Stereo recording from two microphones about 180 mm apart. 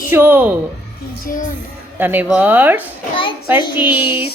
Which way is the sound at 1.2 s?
50° left (ahead or behind).